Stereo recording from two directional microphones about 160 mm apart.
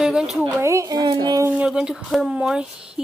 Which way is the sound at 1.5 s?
5° right (ahead or behind).